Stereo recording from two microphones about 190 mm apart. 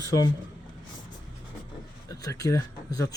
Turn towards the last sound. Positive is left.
turn(degrees=20)  # may be behind; listen again after turning